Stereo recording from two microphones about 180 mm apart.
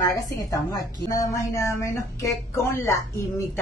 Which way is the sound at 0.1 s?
20° left (ahead or behind).